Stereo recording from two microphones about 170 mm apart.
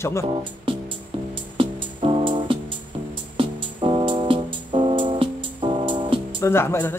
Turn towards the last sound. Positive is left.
turn(degrees=15)  # may be behind; listen again after turning